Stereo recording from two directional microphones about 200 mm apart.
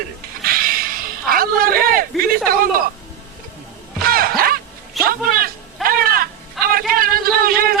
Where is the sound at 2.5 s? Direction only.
45° right (ahead or behind).